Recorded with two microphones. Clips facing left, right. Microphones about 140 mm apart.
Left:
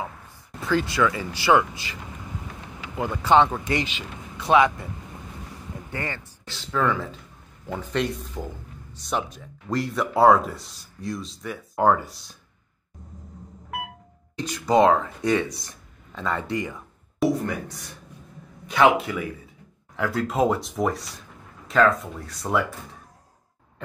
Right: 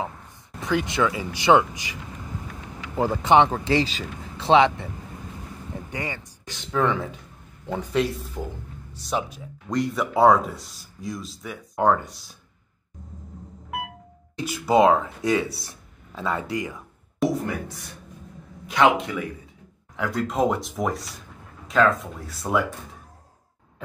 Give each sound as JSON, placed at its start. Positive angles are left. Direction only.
{"t": 0.6, "sound": "speech", "side_deg": -20}
{"t": 3.2, "sound": "speech", "side_deg": -20}
{"t": 3.5, "sound": "speech", "side_deg": -30}
{"t": 5.9, "sound": "speech", "side_deg": -15}
{"t": 7.9, "sound": "speech", "side_deg": 0}
{"t": 14.3, "sound": "speech", "side_deg": -10}
{"t": 18.7, "sound": "speech", "side_deg": 5}